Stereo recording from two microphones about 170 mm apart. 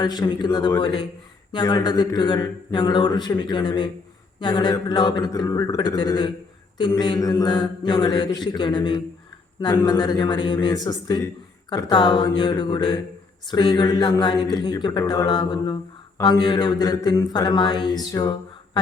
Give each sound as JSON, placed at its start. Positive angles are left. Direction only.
{"t": 0.0, "sound": "speech", "side_deg": 25}